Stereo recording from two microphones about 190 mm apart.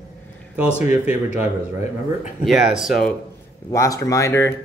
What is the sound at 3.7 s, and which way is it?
Speech, 15° left (ahead or behind).